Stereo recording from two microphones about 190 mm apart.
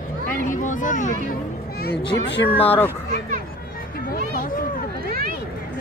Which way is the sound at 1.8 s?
65° left (ahead or behind).